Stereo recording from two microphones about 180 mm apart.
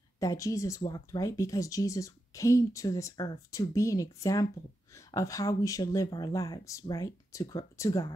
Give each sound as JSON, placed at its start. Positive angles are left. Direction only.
{"t": 0.2, "sound": "speech", "side_deg": 20}